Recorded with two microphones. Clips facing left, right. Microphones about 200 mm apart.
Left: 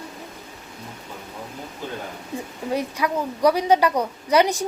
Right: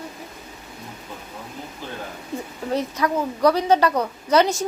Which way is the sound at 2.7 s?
10° left (ahead or behind).